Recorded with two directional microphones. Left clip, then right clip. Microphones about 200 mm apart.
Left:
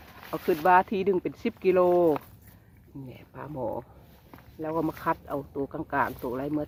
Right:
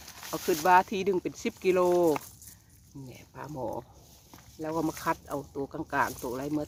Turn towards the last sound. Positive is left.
turn(degrees=0)  # may be behind; listen again after turning